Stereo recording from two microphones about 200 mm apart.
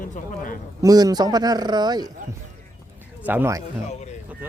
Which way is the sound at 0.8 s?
20° right (ahead or behind).